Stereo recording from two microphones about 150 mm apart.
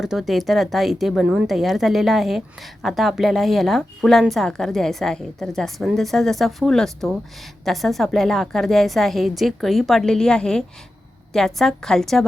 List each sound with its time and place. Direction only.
0.0 s a woman's voice: centre (ahead or behind)